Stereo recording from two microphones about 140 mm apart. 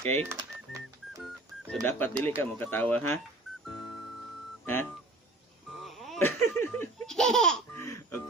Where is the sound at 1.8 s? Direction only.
10° left (ahead or behind).